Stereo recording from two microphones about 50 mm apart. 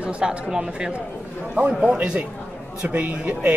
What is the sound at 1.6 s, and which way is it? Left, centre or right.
A man's voice, right.